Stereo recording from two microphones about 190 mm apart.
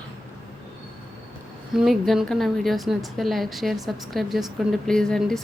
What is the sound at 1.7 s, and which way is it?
A woman's voice, centre (ahead or behind).